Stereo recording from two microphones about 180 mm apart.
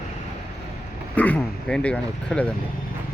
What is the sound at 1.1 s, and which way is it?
Speech, 10° left (ahead or behind).